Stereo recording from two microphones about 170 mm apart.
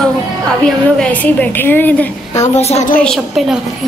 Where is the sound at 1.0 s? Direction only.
10° left (ahead or behind).